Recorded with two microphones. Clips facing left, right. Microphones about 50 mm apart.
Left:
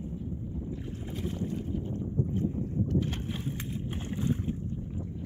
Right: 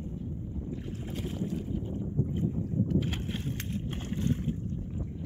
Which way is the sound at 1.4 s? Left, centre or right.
Centre.